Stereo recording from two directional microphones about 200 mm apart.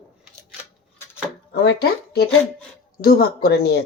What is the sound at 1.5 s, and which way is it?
Speech, 55° left (ahead or behind).